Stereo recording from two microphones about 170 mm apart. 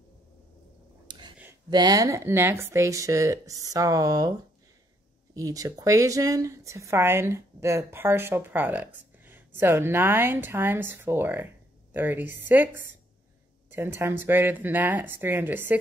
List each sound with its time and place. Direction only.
1.0 s a sound: 25° right (ahead or behind)
1.7 s speech: 25° right (ahead or behind)
5.3 s speech: 20° right (ahead or behind)